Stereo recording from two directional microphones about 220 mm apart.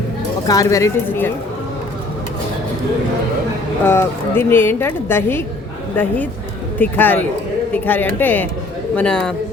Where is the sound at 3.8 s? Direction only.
10° left (ahead or behind).